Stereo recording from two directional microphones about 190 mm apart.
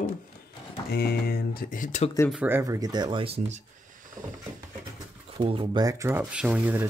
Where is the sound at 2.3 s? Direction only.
10° right (ahead or behind); by 3.6 s 35° right (ahead or behind).